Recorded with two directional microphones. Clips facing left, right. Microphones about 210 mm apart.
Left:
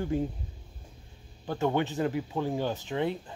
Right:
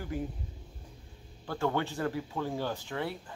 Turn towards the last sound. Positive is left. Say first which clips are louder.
# left 6 dB
turn(degrees=20)  # may be behind; listen again after turning